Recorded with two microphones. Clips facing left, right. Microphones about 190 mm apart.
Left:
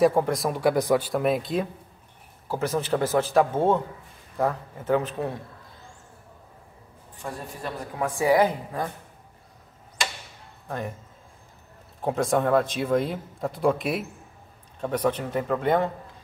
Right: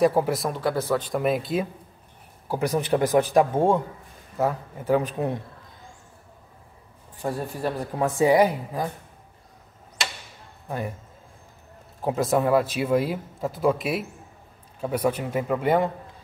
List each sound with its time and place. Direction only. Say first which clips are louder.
0.0 s speech: even; 5° right (ahead or behind)
0.5 s speech: left 3 dB; 15° left (ahead or behind)
2.4 s speech: right 2 dB; 15° right (ahead or behind)
7.2 s a man's voice: right 7 dB; 35° right (ahead or behind)
8.1 s a woman's voice: right 2 dB; 20° right (ahead or behind)
12.0 s speech: right 1 dB; 5° right (ahead or behind)